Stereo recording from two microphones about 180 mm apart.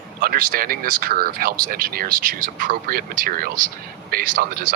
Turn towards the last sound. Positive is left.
turn(degrees=-55)  # may be behind; listen again after turning